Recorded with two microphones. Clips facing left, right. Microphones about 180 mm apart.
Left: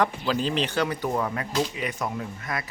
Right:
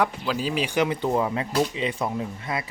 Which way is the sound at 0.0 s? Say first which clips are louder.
Even; 5° right (ahead or behind).